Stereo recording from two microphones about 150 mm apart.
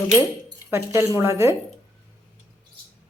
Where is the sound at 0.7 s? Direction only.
15° right (ahead or behind).